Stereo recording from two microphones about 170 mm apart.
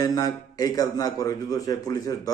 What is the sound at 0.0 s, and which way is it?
A man's voice, 20° left (ahead or behind).